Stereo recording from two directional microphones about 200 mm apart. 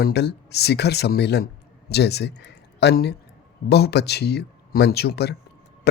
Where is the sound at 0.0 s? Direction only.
55° left (ahead or behind).